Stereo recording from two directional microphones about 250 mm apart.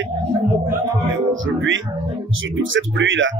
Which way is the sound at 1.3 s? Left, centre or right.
Right.